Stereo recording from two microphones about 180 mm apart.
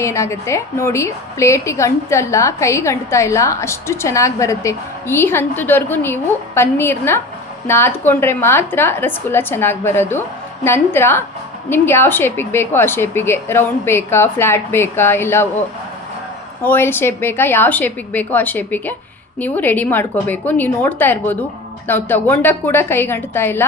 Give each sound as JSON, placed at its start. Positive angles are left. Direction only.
{"t": 0.0, "sound": "a woman's voice", "side_deg": 15}
{"t": 16.6, "sound": "a woman's voice", "side_deg": 10}